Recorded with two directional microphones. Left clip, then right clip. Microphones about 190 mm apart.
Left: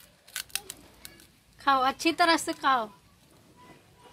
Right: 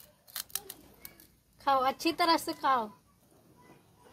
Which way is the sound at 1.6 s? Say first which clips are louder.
Left 3 dB; 10° left (ahead or behind).